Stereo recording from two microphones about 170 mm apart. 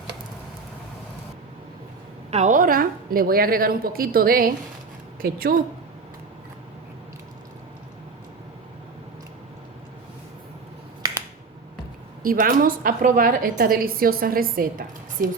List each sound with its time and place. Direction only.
2.3 s a woman's voice: 50° right (ahead or behind)
12.2 s a woman's voice: 55° right (ahead or behind)